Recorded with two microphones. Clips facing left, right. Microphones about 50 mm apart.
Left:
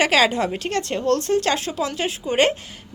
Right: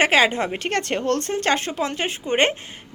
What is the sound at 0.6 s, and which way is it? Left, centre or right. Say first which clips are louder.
A woman's voice: even; right.